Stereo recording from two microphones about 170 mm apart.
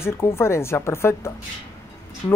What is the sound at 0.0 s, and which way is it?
Speech, 15° left (ahead or behind).